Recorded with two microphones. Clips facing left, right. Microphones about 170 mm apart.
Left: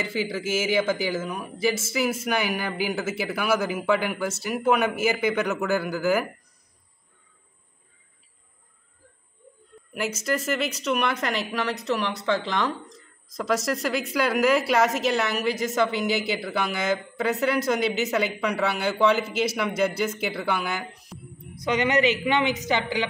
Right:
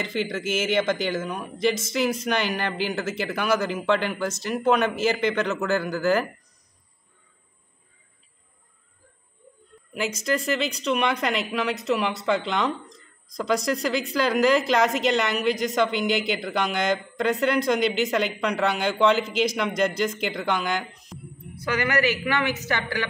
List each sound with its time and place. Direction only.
0.0 s a man's voice: 5° left (ahead or behind)
9.9 s a woman's voice: 5° left (ahead or behind)
21.6 s a man's voice: 20° left (ahead or behind)